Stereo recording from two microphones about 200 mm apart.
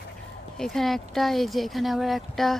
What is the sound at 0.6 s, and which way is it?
Speech, centre (ahead or behind).